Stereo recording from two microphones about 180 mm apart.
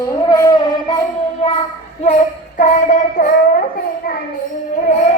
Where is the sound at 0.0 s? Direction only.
25° left (ahead or behind).